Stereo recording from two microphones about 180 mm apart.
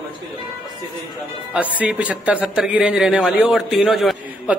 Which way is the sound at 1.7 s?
10° right (ahead or behind).